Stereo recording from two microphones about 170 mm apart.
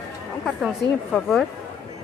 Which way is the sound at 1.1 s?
Centre (ahead or behind).